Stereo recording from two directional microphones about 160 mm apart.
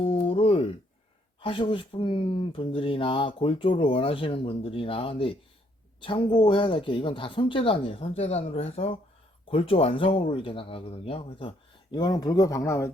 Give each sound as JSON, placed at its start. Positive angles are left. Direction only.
{"t": 0.0, "sound": "a sound", "side_deg": 35}
{"t": 1.4, "sound": "speech", "side_deg": 30}
{"t": 11.9, "sound": "speech", "side_deg": 25}